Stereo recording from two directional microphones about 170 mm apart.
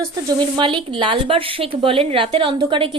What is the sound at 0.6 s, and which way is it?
A woman's voice, 30° right (ahead or behind).